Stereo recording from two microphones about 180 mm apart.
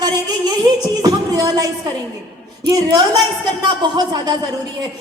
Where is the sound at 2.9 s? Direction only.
20° right (ahead or behind).